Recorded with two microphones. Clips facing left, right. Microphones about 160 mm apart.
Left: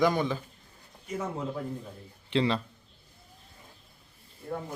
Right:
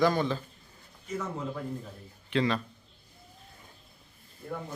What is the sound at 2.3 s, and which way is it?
Speech, 25° left (ahead or behind).